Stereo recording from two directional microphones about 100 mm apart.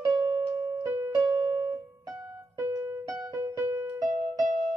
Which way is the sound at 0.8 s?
25° right (ahead or behind).